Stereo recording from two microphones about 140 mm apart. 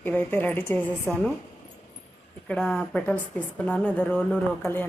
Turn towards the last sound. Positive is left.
turn(degrees=10)  # may be behind; listen again after turning